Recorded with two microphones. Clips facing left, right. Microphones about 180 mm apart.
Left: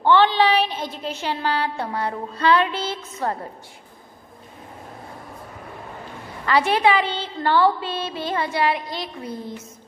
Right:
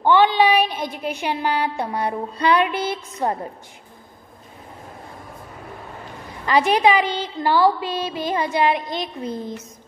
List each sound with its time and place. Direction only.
0.0 s a woman's voice: 15° right (ahead or behind)
6.4 s a woman's voice: 15° right (ahead or behind)